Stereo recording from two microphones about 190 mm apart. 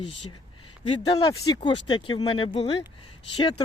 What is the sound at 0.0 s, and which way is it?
Speech, 30° left (ahead or behind).